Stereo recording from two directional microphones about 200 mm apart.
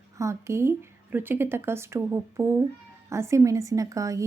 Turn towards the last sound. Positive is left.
turn(degrees=-15)  # may be behind; listen again after turning